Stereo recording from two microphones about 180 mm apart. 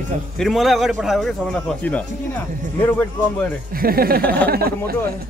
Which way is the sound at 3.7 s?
55° right (ahead or behind).